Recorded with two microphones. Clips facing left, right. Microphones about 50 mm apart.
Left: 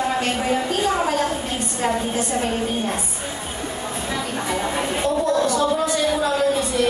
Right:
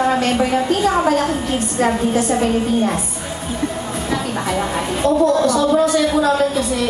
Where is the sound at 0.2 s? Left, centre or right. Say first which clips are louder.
Right 5 dB; right.